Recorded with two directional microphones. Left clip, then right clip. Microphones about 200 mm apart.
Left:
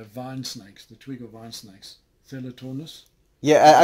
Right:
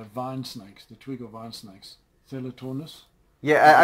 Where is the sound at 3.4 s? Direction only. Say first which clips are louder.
Left 2 dB; 55° left (ahead or behind).